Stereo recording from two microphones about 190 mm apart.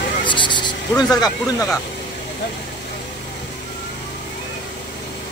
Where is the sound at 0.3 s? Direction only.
25° left (ahead or behind).